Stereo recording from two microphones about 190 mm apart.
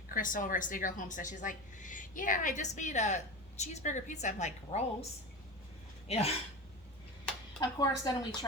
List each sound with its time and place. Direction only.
0.1 s a woman's voice: 45° left (ahead or behind)
6.1 s a woman's voice: 35° left (ahead or behind)
7.8 s a woman's voice: 20° left (ahead or behind)